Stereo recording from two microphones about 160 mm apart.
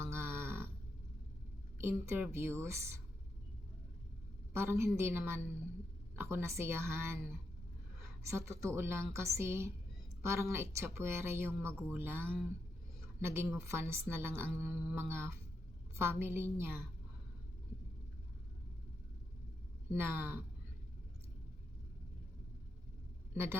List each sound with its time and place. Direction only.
0.0 s grunt: 15° right (ahead or behind)
1.8 s speech: 15° right (ahead or behind)
4.5 s speech: 15° right (ahead or behind)
19.9 s speech: 15° right (ahead or behind)
23.3 s speech: 15° right (ahead or behind)